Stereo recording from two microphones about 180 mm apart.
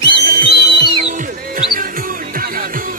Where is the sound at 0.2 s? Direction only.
45° right (ahead or behind).